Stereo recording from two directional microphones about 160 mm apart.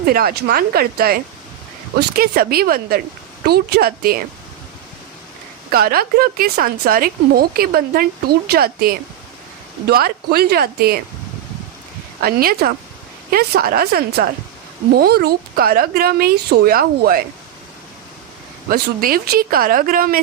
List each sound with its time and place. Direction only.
0.0 s speech: 70° right (ahead or behind)
3.4 s speech: 80° right
5.7 s speech: 70° right (ahead or behind)
12.2 s speech: 65° right (ahead or behind)
18.7 s speech: 65° right (ahead or behind)